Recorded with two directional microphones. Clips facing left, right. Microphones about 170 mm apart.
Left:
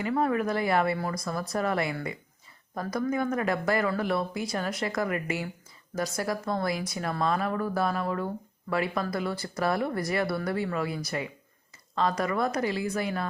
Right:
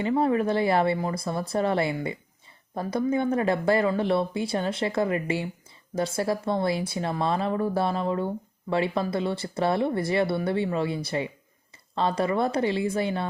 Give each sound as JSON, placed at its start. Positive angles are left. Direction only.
{"t": 0.0, "sound": "speech", "side_deg": -25}